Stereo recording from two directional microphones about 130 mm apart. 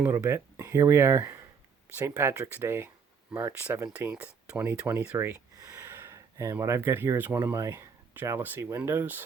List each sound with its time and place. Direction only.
0.0 s speech: 20° right (ahead or behind)
4.0 s speech: 10° right (ahead or behind)